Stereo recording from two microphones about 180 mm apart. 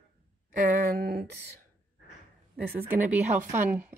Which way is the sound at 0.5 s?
45° right (ahead or behind).